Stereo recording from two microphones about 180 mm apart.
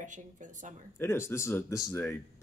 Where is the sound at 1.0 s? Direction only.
15° left (ahead or behind).